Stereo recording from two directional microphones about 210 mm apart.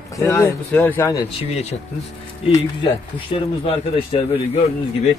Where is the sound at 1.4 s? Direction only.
30° left (ahead or behind).